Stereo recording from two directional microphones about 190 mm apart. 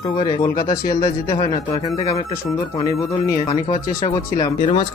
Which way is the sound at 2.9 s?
15° left (ahead or behind).